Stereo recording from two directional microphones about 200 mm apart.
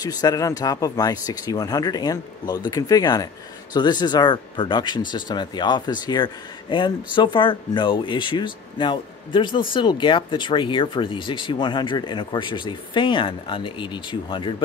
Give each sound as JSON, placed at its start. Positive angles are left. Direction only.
{"t": 0.0, "sound": "speech", "side_deg": 20}